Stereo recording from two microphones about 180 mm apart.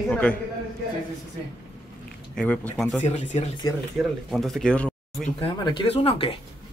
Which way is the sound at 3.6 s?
20° left (ahead or behind).